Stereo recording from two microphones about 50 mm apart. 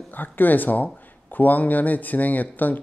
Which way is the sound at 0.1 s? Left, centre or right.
Left.